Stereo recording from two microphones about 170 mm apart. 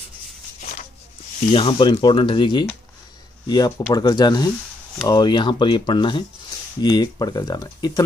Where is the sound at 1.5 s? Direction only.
30° left (ahead or behind).